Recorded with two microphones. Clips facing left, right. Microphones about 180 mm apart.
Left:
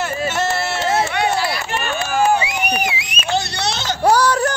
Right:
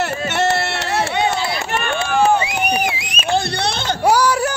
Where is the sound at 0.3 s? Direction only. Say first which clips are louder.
Right 2 dB; 65° right (ahead or behind).